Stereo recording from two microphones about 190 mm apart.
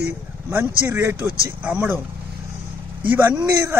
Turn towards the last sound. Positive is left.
turn(degrees=-10)  # may be behind; listen again after turning